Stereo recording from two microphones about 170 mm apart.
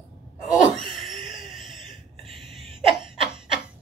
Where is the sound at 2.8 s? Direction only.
30° right (ahead or behind).